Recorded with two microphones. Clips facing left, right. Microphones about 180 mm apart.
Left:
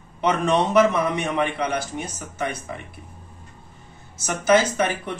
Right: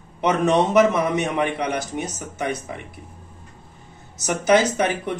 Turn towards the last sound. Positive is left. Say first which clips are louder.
# right 1 dB
turn(degrees=-20)  # may be behind; listen again after turning